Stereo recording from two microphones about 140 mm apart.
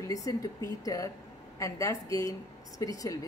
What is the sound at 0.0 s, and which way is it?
A woman's voice, 25° left (ahead or behind).